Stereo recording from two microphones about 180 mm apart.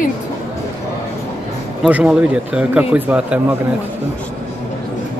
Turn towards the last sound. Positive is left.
turn(degrees=-10)  # may be behind; listen again after turning